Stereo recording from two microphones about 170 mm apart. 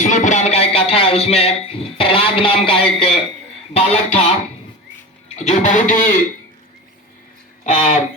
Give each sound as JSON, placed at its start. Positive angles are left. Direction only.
{"t": 0.0, "sound": "music", "side_deg": 45}
{"t": 2.0, "sound": "speech", "side_deg": 30}
{"t": 5.3, "sound": "speech", "side_deg": 40}
{"t": 7.6, "sound": "speech", "side_deg": 45}